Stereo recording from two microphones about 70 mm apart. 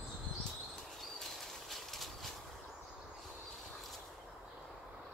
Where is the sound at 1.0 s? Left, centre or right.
Centre.